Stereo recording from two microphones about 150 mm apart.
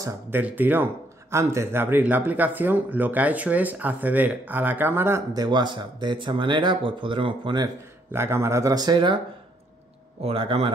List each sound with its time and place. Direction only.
0.0 s speech: 10° right (ahead or behind); by 7.7 s 30° right (ahead or behind)
8.1 s speech: 15° right (ahead or behind)
10.2 s a man's voice: 40° right (ahead or behind)